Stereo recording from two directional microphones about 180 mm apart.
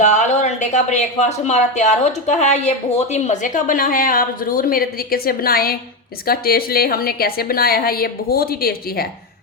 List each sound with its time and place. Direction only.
0.0 s a woman's voice: 40° left (ahead or behind); by 9.0 s 55° left (ahead or behind)